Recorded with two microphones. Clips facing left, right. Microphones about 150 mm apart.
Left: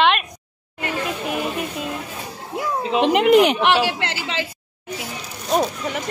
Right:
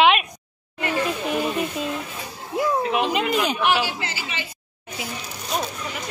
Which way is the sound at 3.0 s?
70° left (ahead or behind).